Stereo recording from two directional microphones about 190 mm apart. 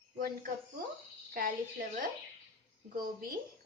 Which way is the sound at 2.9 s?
50° right (ahead or behind).